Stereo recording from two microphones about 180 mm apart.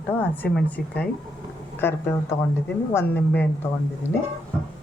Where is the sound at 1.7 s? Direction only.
10° left (ahead or behind).